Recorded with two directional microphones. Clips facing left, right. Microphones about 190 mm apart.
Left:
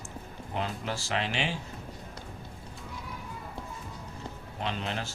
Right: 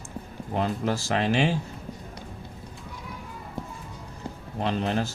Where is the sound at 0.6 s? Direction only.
45° right (ahead or behind).